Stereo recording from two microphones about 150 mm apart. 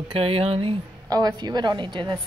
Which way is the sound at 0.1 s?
40° right (ahead or behind).